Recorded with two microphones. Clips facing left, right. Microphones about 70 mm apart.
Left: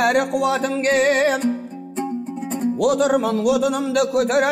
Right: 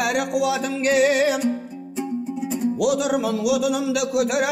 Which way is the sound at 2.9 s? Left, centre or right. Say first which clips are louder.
Left 4 dB; left.